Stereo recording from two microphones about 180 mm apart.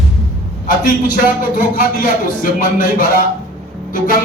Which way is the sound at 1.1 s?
55° left (ahead or behind).